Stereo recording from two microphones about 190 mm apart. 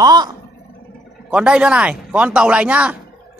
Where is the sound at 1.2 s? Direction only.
5° right (ahead or behind).